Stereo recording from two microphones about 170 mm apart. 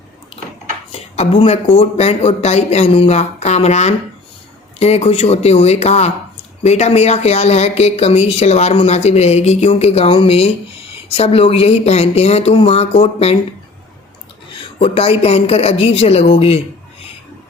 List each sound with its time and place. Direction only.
0.9 s speech: 35° left (ahead or behind)
14.8 s speech: 35° left (ahead or behind)